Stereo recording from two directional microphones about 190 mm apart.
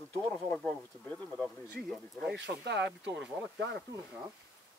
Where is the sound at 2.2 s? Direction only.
65° right (ahead or behind).